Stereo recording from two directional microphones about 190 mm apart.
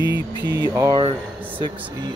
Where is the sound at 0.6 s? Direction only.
20° right (ahead or behind).